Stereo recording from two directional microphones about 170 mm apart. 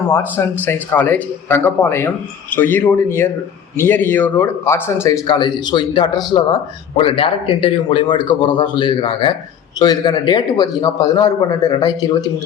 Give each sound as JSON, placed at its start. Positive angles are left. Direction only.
{"t": 0.1, "sound": "speech", "side_deg": 15}